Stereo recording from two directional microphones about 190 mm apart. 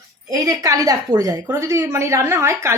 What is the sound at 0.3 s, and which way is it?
A woman's voice, 20° right (ahead or behind).